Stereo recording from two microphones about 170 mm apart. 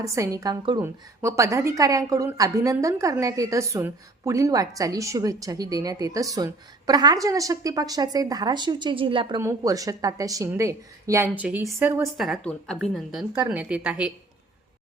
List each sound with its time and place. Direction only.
0.0 s a woman's voice: 20° right (ahead or behind)
9.4 s a woman's voice: 20° right (ahead or behind)
12.1 s a woman's voice: centre (ahead or behind)
13.3 s a woman's voice: 10° right (ahead or behind)